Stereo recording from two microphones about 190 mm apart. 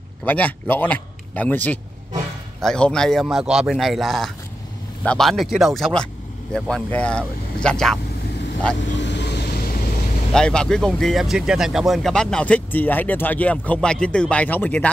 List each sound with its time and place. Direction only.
0.2 s a man's voice: 10° left (ahead or behind)
8.9 s vehicle: 65° left (ahead or behind)
10.3 s speech: 5° left (ahead or behind)